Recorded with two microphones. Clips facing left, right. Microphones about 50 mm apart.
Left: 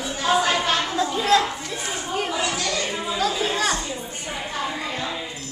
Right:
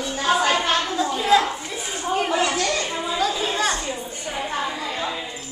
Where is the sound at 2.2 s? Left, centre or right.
Right.